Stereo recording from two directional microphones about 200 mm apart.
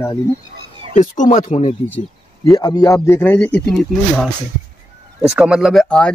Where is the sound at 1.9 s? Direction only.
10° left (ahead or behind).